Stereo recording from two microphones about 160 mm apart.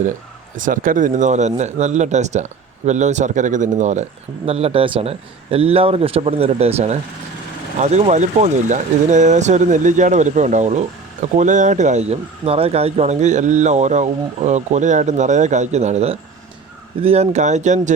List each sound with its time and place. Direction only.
0.5 s speech: 55° right (ahead or behind)
4.4 s a man's voice: 40° right (ahead or behind)